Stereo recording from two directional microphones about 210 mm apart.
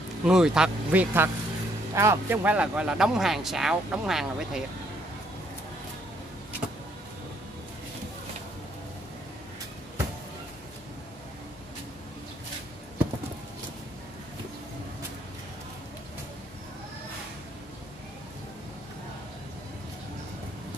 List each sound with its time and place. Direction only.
0.2 s speech: 5° right (ahead or behind)